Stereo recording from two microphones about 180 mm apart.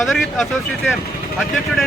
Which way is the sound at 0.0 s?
Centre (ahead or behind).